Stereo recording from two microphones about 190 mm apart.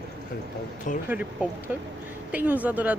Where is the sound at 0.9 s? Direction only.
40° left (ahead or behind).